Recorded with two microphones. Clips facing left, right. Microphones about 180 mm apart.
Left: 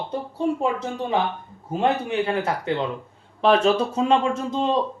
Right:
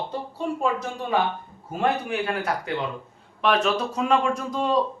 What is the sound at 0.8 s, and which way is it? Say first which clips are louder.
Speech: left 1 dB; 20° left (ahead or behind).